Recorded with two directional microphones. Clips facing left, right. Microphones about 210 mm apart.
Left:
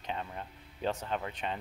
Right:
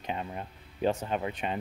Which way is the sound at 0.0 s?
15° right (ahead or behind).